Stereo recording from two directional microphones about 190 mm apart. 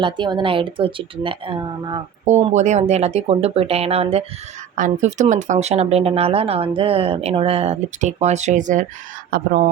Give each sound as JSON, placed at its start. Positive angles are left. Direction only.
{"t": 0.0, "sound": "a woman's voice", "side_deg": -25}
{"t": 2.2, "sound": "speech", "side_deg": -35}